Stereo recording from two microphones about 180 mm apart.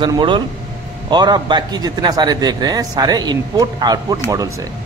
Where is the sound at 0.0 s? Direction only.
25° right (ahead or behind).